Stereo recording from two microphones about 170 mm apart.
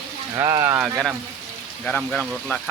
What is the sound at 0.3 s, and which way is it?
Speech, 20° right (ahead or behind).